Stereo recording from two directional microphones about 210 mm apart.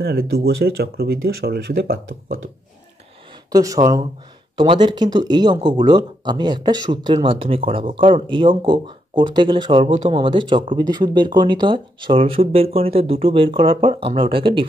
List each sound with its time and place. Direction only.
0.0 s speech: 50° right (ahead or behind)
3.5 s speech: 15° right (ahead or behind)